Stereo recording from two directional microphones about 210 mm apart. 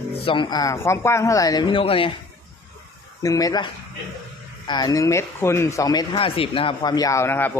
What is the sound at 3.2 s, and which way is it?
Speech, 15° left (ahead or behind).